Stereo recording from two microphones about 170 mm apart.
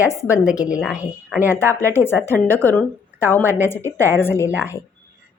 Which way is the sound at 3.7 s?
15° left (ahead or behind).